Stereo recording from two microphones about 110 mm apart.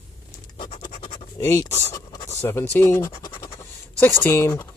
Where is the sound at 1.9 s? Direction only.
35° left (ahead or behind).